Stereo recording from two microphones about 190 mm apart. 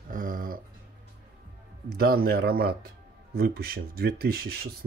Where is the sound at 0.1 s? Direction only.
45° right (ahead or behind).